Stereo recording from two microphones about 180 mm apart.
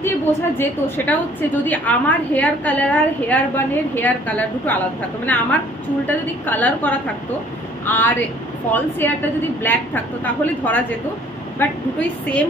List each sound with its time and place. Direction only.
0.0 s a woman's voice: 10° left (ahead or behind)